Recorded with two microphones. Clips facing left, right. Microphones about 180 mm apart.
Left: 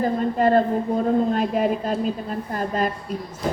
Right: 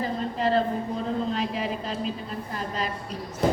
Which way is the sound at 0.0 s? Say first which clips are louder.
Left 7 dB; 50° left (ahead or behind).